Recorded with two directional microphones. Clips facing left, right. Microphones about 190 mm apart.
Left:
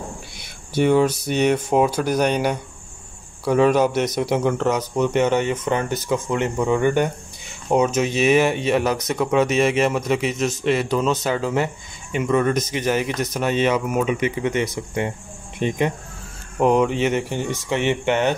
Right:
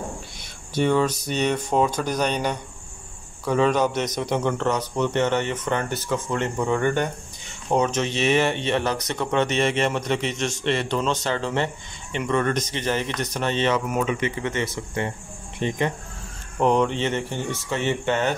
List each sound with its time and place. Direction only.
0.4 s a man's voice: 10° left (ahead or behind)